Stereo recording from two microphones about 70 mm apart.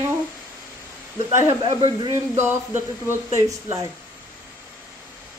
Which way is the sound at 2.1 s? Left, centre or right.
Right.